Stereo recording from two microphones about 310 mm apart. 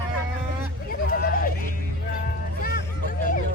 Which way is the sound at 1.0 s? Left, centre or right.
Left.